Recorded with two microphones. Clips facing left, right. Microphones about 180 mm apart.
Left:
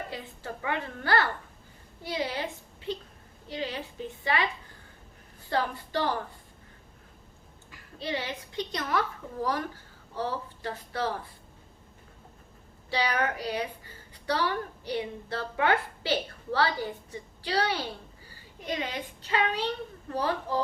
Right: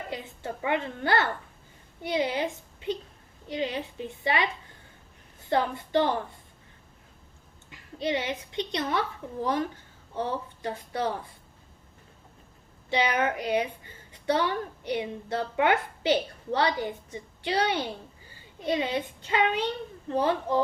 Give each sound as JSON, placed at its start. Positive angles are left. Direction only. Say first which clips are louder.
{"t": 0.1, "sound": "a woman's voice", "louder": "right 3 dB", "side_deg": -20}
{"t": 5.5, "sound": "a woman's voice", "louder": "right 4 dB", "side_deg": -20}
{"t": 7.7, "sound": "a woman's voice", "louder": "right 5 dB", "side_deg": -20}
{"t": 12.9, "sound": "a woman's voice", "louder": "right 3 dB", "side_deg": -20}